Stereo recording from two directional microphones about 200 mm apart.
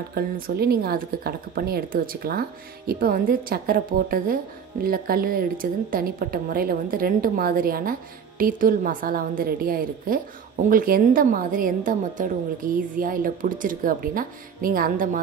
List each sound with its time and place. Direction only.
0.1 s a woman's voice: 50° right (ahead or behind)